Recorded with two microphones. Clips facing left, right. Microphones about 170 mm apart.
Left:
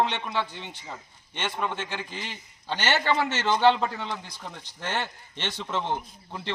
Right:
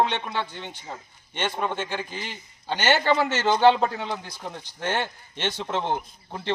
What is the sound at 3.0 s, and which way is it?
Speech, 35° right (ahead or behind).